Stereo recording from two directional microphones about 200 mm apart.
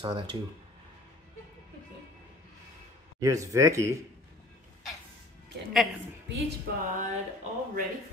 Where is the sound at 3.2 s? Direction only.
15° right (ahead or behind).